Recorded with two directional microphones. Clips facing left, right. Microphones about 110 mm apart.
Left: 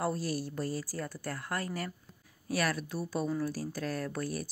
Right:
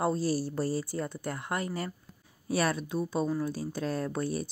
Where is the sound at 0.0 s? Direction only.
30° right (ahead or behind).